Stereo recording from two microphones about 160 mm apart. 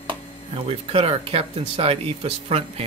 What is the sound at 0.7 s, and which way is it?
Speech, 35° right (ahead or behind).